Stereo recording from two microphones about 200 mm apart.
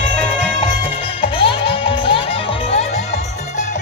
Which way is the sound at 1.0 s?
25° left (ahead or behind).